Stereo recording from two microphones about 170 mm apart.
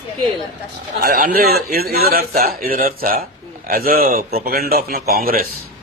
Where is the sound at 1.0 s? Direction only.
55° right (ahead or behind).